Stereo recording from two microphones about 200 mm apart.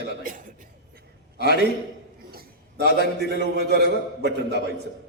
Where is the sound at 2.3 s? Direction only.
55° right (ahead or behind).